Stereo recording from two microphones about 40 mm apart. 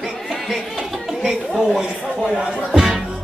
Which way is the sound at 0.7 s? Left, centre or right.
Centre.